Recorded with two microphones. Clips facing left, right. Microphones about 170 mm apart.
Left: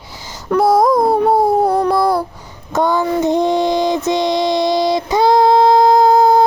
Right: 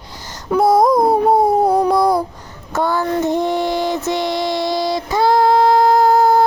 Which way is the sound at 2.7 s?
15° left (ahead or behind).